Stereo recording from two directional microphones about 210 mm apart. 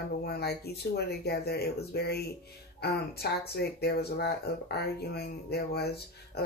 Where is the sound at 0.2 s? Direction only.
50° left (ahead or behind).